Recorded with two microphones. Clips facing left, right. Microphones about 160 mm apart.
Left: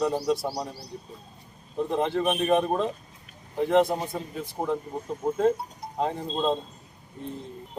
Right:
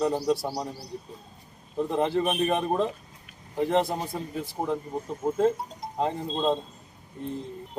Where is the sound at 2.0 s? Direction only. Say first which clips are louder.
Right 1 dB; centre (ahead or behind).